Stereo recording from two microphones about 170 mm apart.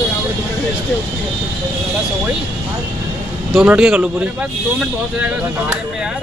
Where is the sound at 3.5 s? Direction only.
5° right (ahead or behind).